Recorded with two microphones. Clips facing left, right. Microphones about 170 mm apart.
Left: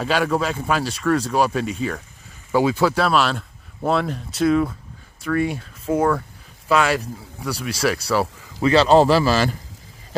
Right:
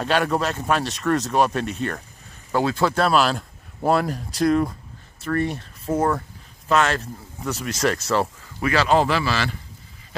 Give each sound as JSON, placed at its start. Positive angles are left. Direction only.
{"t": 0.0, "sound": "speech", "side_deg": 0}
{"t": 8.5, "sound": "a man's voice", "side_deg": 30}